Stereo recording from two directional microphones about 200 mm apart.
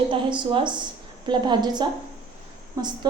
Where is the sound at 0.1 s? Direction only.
25° right (ahead or behind).